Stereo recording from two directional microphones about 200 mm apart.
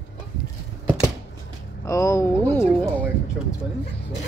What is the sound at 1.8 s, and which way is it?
Speech, 15° left (ahead or behind).